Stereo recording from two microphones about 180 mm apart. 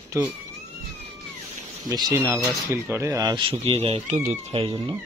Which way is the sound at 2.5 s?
15° right (ahead or behind).